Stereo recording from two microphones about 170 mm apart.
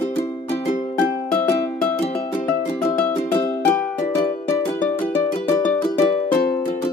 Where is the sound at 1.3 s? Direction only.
5° left (ahead or behind).